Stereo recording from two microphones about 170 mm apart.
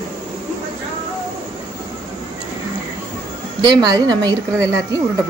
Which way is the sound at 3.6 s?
25° right (ahead or behind).